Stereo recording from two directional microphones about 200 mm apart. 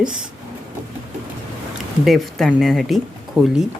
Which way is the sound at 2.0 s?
Centre (ahead or behind).